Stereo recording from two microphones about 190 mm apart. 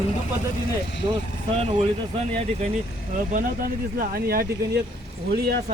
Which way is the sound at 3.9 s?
50° right (ahead or behind).